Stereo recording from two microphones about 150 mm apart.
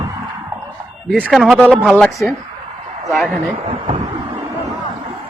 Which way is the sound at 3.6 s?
40° right (ahead or behind).